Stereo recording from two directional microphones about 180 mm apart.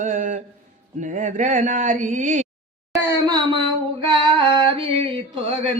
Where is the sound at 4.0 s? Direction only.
30° right (ahead or behind).